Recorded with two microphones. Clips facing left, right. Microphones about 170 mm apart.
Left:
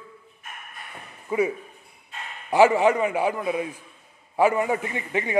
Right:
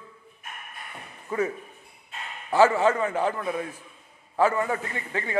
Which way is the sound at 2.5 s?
15° left (ahead or behind).